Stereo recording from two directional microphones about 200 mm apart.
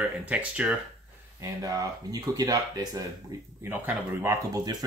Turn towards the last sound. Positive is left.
turn(degrees=-20)  # may be behind; listen again after turning